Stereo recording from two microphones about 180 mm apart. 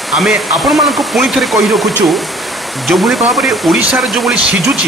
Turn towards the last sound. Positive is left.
turn(degrees=-5)  # may be behind; listen again after turning